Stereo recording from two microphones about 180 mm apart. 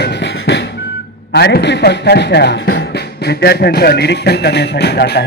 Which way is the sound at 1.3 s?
65° left (ahead or behind).